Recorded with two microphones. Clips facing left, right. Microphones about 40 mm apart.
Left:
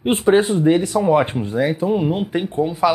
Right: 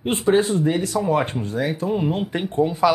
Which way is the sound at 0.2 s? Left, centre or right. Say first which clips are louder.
Left 2 dB; left.